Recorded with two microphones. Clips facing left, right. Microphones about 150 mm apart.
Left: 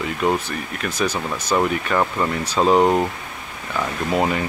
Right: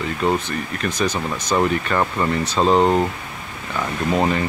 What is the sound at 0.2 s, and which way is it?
Speech, 10° left (ahead or behind).